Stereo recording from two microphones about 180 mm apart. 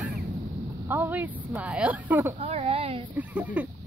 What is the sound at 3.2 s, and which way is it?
Speech, 10° right (ahead or behind).